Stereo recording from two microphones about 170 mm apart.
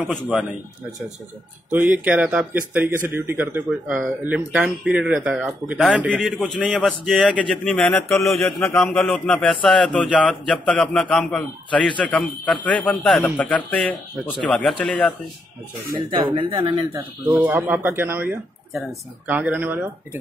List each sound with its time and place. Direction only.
0.1 s a man's voice: 5° right (ahead or behind)
1.7 s a man's voice: 10° right (ahead or behind)
6.9 s a man's voice: 5° left (ahead or behind)
15.9 s speech: 30° right (ahead or behind)
17.3 s speech: 10° right (ahead or behind)